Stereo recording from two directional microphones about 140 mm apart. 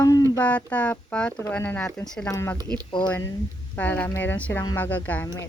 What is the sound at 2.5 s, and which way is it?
Speech, 30° right (ahead or behind).